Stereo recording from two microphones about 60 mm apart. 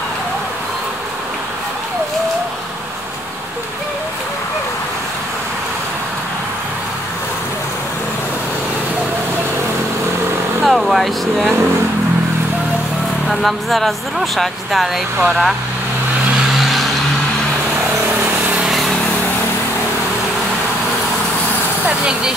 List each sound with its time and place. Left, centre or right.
10.6 s vehicle: centre
13.3 s speech: centre
18.0 s vehicle: right
21.8 s vehicle: centre